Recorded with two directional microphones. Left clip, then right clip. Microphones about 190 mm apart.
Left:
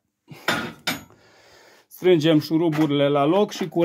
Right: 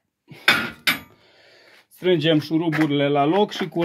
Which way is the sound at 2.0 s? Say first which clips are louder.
Left 1 dB; 5° left (ahead or behind).